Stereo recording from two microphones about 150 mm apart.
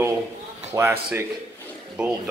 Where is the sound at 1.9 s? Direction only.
5° right (ahead or behind).